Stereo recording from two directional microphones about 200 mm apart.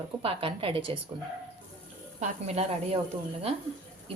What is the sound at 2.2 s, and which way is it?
Speech, 35° right (ahead or behind).